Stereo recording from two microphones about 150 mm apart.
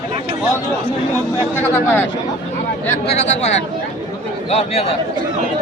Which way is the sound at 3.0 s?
50° left (ahead or behind).